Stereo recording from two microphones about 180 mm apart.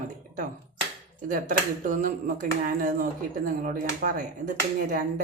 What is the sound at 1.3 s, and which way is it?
Speech, 50° right (ahead or behind).